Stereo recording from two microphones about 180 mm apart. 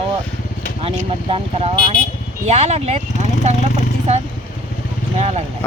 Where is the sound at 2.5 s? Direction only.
35° right (ahead or behind).